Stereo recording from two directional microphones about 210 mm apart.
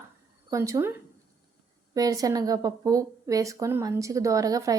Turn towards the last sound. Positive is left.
turn(degrees=-15)  # may be behind; listen again after turning